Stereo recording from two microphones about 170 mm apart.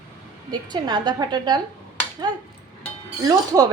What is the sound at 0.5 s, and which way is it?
A woman's voice, 25° right (ahead or behind).